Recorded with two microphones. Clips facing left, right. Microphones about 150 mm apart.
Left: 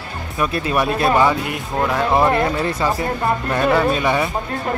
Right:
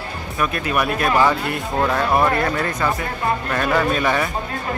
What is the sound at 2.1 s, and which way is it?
Speech, 25° left (ahead or behind).